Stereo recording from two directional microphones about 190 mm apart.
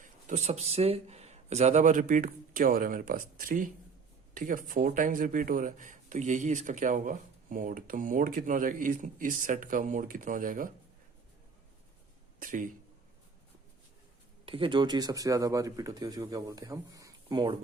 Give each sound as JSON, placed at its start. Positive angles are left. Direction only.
{"t": 0.0, "sound": "speech", "side_deg": -40}
{"t": 12.4, "sound": "speech", "side_deg": -45}
{"t": 14.4, "sound": "speech", "side_deg": -30}